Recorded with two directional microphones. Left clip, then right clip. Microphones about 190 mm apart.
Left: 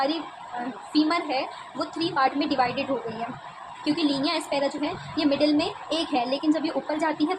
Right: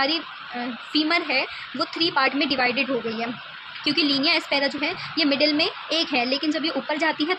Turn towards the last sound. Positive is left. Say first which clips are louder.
# right 2 dB
turn(degrees=-20)  # may be behind; listen again after turning